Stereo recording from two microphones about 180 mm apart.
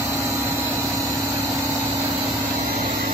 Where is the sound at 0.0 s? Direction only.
15° right (ahead or behind).